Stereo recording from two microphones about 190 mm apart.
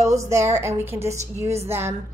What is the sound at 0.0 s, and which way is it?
A woman's voice, 15° right (ahead or behind).